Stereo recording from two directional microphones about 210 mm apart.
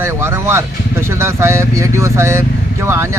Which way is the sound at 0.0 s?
10° right (ahead or behind).